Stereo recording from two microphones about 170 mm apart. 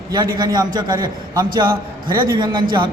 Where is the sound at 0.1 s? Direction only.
25° right (ahead or behind).